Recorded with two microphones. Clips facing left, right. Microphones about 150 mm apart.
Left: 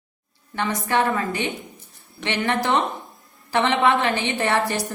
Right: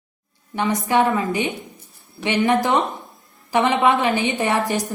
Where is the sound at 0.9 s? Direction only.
20° right (ahead or behind).